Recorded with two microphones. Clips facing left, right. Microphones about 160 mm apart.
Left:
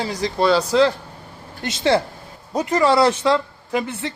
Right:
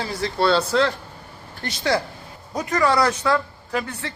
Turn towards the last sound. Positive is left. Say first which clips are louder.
# left 4 dB
turn(degrees=20)  # may be behind; listen again after turning